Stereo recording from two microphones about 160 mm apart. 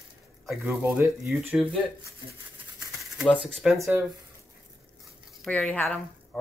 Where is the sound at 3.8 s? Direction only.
15° right (ahead or behind).